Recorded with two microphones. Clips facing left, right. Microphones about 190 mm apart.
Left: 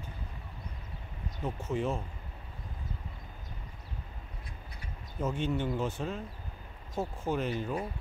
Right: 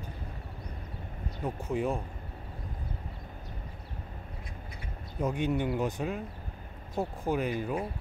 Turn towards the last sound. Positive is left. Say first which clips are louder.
# right 2 dB
turn(degrees=-10)  # may be behind; listen again after turning